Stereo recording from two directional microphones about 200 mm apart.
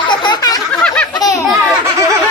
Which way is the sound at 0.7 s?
5° left (ahead or behind).